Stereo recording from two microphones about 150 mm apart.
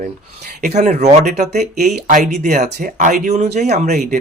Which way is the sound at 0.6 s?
50° right (ahead or behind).